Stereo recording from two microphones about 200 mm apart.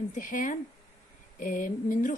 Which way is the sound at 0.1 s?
40° left (ahead or behind).